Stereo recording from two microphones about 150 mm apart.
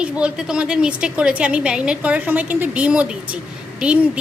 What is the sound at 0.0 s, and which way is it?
A woman's voice, 5° right (ahead or behind).